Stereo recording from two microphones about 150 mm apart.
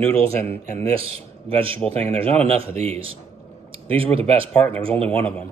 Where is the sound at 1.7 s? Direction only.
5° left (ahead or behind).